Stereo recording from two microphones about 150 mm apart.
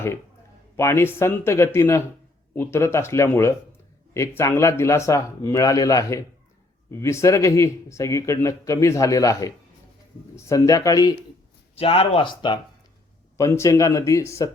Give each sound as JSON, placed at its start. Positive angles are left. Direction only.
{"t": 0.8, "sound": "speech", "side_deg": 15}
{"t": 11.7, "sound": "speech", "side_deg": 40}
{"t": 13.3, "sound": "speech", "side_deg": 20}